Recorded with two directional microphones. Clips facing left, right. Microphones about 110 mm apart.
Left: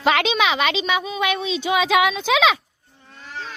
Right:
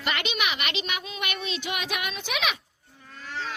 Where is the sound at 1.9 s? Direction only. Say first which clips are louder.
Left 14 dB; 90° left.